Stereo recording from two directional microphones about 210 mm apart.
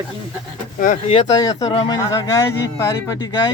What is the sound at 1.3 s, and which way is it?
Speech, 15° left (ahead or behind).